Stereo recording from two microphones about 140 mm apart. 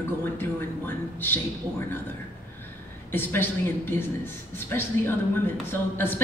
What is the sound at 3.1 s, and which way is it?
A woman's voice, 15° left (ahead or behind).